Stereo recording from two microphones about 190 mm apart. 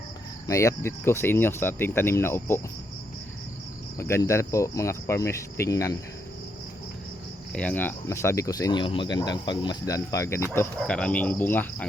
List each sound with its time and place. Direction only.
0.4 s speech: 15° left (ahead or behind)
3.9 s speech: 15° left (ahead or behind)
7.5 s speech: 5° left (ahead or behind)
10.8 s speech: 5° left (ahead or behind)